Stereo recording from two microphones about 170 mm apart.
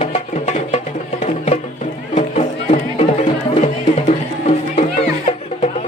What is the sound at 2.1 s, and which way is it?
Music, 40° left (ahead or behind).